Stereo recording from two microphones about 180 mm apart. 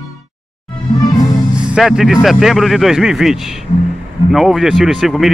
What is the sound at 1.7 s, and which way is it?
Speech, centre (ahead or behind).